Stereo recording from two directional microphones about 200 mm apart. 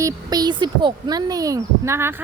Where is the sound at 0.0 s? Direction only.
20° right (ahead or behind).